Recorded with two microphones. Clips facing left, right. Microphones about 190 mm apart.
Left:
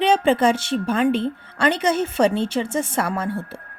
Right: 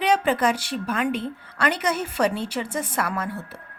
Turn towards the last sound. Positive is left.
turn(degrees=30)  # may be behind; listen again after turning